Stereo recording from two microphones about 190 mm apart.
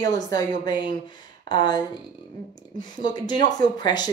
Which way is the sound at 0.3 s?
20° left (ahead or behind).